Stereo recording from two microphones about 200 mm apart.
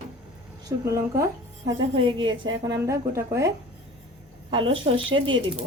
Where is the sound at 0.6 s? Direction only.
15° right (ahead or behind).